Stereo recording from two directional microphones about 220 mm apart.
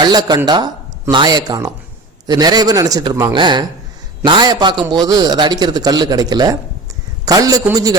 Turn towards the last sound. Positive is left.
turn(degrees=-15)  # may be behind; listen again after turning